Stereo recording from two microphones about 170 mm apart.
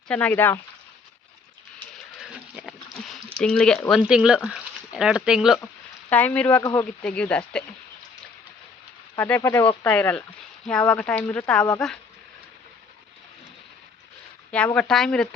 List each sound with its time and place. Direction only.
0.1 s speech: 10° left (ahead or behind)
2.1 s a sound: centre (ahead or behind)
3.4 s speech: 5° left (ahead or behind)
6.1 s speech: 10° left (ahead or behind)
6.6 s speech: 20° left (ahead or behind)
7.0 s speech: 5° left (ahead or behind)
9.1 s speech: 10° left (ahead or behind)
14.5 s speech: 5° left (ahead or behind)